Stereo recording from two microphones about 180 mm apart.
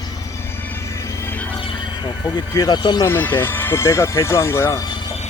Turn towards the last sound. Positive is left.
turn(degrees=20)  # may be behind; listen again after turning